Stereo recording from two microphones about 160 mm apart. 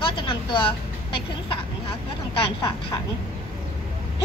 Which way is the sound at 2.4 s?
35° left (ahead or behind).